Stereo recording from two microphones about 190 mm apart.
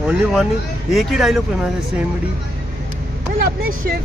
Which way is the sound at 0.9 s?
Centre (ahead or behind).